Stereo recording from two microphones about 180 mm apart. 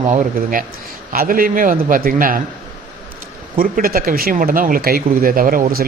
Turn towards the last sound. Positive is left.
turn(degrees=-55)  # may be behind; listen again after turning